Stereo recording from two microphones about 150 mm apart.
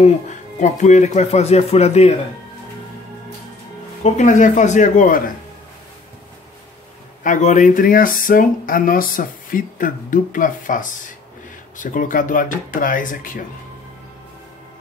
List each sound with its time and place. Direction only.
0.0 s speech: 50° left (ahead or behind)
4.0 s speech: 55° left (ahead or behind)
7.2 s speech: 55° left (ahead or behind)